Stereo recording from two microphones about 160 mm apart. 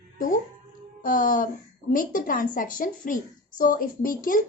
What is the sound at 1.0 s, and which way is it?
Speech, 55° left (ahead or behind).